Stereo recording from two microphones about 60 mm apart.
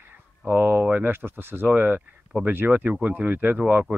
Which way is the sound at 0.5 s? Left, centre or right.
Right.